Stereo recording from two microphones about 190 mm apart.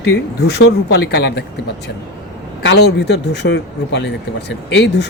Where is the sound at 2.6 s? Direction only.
60° left (ahead or behind).